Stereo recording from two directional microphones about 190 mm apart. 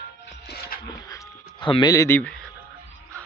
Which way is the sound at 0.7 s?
50° left (ahead or behind).